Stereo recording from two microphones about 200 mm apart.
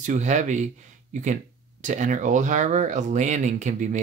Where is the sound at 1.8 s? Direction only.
40° right (ahead or behind).